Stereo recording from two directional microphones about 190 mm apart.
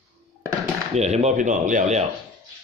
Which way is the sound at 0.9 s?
35° right (ahead or behind).